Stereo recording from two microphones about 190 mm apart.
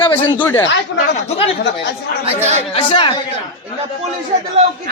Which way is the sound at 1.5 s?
65° left (ahead or behind).